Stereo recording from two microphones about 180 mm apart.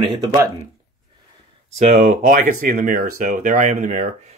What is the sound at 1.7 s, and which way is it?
Speech, 40° right (ahead or behind).